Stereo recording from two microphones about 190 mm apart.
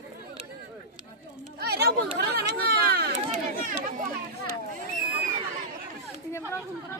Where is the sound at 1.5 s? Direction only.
55° right (ahead or behind).